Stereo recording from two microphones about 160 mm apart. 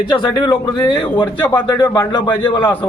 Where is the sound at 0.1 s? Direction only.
25° left (ahead or behind).